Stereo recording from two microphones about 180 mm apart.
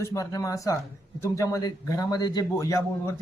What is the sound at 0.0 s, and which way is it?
A man's voice, 15° left (ahead or behind).